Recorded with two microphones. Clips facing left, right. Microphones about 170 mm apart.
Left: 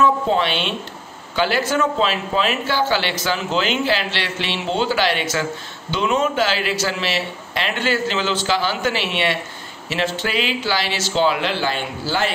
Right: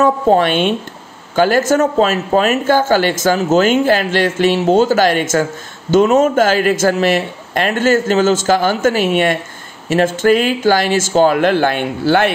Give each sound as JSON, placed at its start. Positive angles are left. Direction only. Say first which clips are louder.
{"t": 0.0, "sound": "speech", "louder": "right 6 dB", "side_deg": -50}